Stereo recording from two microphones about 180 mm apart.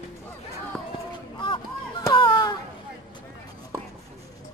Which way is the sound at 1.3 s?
30° left (ahead or behind).